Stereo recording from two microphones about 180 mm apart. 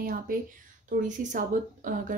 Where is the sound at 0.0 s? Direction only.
50° right (ahead or behind).